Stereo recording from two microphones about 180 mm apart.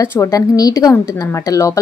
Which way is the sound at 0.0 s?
15° left (ahead or behind).